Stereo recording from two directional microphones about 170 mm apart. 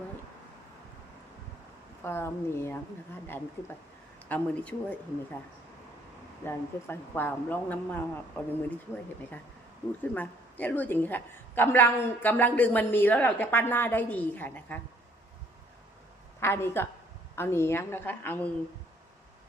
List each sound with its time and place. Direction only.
2.0 s a woman's voice: 15° left (ahead or behind)
6.4 s a woman's voice: 15° left (ahead or behind)
10.0 s a woman's voice: 10° left (ahead or behind)
16.4 s a woman's voice: 15° left (ahead or behind)